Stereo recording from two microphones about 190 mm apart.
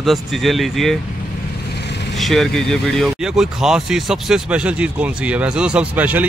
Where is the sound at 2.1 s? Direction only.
Centre (ahead or behind).